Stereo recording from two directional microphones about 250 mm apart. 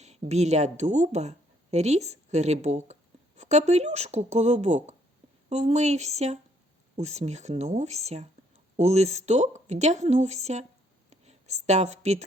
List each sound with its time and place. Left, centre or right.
0.0 s a woman's voice: right